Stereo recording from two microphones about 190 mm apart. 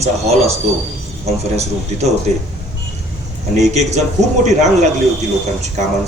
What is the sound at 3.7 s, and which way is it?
Speech, 35° right (ahead or behind).